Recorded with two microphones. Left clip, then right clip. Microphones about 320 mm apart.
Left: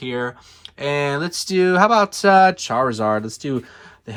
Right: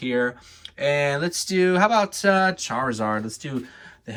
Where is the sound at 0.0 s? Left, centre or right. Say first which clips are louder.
Right 1 dB; centre.